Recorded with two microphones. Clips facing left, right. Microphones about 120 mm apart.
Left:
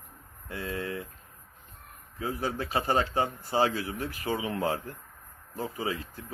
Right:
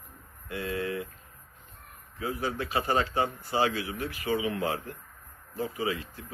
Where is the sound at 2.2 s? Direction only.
35° left (ahead or behind).